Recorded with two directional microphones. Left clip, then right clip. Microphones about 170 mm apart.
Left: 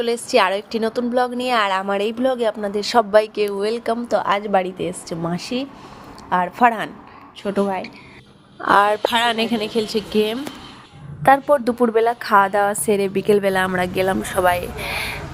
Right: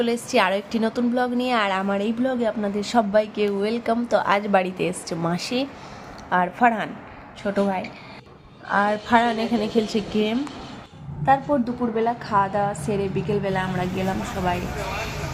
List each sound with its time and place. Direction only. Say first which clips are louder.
0.0 s a woman's voice: left 3 dB; 30° left (ahead or behind)
4.1 s a woman's voice: left 1 dB; 20° left (ahead or behind)
6.3 s a woman's voice: left 3 dB; 25° left (ahead or behind)
8.6 s a woman's voice: left 7 dB; 55° left (ahead or behind)
9.7 s a woman's voice: left 6 dB; 30° left (ahead or behind)
11.3 s a woman's voice: left 6 dB; 90° left; by 14.6 s 75° left (ahead or behind)